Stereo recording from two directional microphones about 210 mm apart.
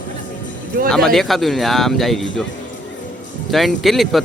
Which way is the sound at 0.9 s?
Centre (ahead or behind).